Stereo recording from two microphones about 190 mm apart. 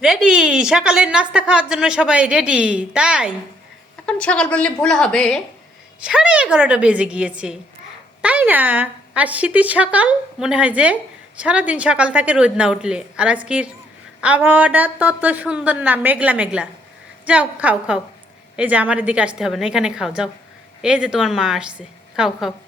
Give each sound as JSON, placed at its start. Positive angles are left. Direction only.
{"t": 0.0, "sound": "a woman's voice", "side_deg": -5}